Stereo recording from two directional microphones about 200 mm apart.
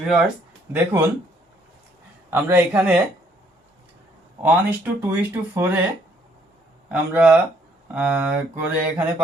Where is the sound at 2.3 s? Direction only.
10° right (ahead or behind).